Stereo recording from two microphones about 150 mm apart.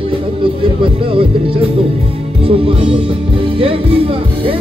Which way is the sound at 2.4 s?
40° right (ahead or behind).